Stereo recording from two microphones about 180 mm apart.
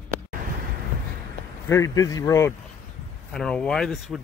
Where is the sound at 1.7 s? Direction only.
15° left (ahead or behind).